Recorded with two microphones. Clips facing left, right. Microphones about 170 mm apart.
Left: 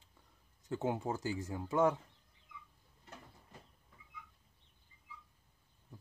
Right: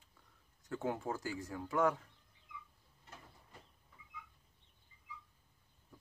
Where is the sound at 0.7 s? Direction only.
20° left (ahead or behind).